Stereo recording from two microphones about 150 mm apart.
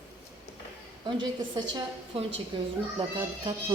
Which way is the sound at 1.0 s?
30° right (ahead or behind).